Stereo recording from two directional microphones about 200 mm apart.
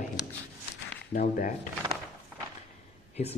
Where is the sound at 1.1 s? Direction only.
45° left (ahead or behind).